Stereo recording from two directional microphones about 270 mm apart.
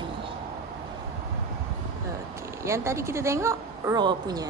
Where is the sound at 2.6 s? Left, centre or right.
Centre.